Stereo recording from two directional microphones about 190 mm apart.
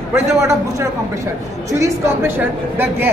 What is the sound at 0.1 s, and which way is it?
A woman's voice, 15° right (ahead or behind).